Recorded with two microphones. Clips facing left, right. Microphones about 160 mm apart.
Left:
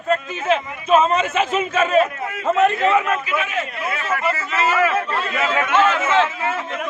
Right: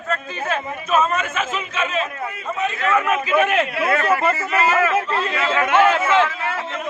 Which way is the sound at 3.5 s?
70° right (ahead or behind).